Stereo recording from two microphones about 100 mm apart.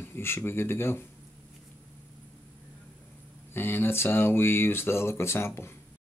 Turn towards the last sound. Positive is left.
turn(degrees=25)  # may be behind; listen again after turning